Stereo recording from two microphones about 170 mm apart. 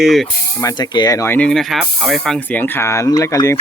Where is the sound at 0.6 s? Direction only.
25° left (ahead or behind).